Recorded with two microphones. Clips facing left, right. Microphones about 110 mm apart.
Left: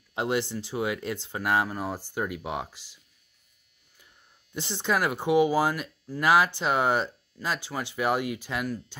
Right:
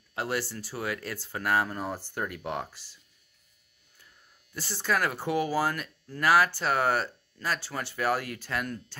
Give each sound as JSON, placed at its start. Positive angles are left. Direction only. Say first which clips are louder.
{"t": 0.1, "sound": "speech", "louder": "left 4 dB", "side_deg": 20}
{"t": 4.6, "sound": "speech", "louder": "left 2 dB", "side_deg": 20}